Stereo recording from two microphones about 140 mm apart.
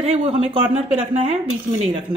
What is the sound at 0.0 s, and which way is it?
Speech, 45° right (ahead or behind).